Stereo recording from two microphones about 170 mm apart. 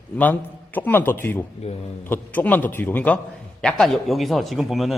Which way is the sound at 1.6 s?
35° left (ahead or behind).